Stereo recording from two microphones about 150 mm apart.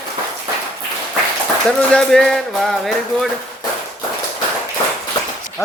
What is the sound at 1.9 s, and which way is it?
Speech, 5° left (ahead or behind).